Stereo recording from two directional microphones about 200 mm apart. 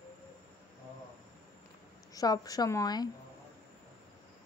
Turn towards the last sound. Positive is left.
turn(degrees=20)  # may be behind; listen again after turning